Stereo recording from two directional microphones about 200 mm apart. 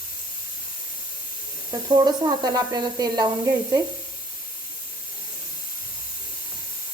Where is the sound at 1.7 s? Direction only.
20° right (ahead or behind).